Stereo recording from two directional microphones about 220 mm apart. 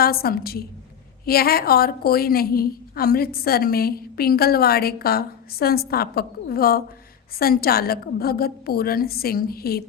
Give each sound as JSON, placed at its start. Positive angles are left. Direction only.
{"t": 0.0, "sound": "a woman's voice", "side_deg": 45}